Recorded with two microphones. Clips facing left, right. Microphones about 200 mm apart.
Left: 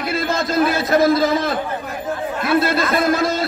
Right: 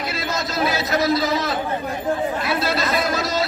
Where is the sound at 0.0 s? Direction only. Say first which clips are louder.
Left 5 dB; 55° left (ahead or behind).